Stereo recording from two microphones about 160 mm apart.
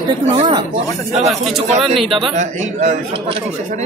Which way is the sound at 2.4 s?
45° right (ahead or behind).